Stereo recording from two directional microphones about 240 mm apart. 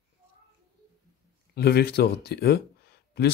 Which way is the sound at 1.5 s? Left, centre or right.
Left.